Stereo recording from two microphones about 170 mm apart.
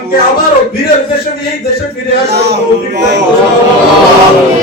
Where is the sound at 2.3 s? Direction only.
75° right (ahead or behind).